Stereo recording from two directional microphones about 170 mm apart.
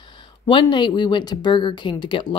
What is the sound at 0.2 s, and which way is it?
Speech, 30° left (ahead or behind).